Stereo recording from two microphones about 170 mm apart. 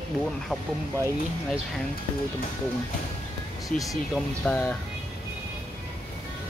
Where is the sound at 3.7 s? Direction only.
50° left (ahead or behind).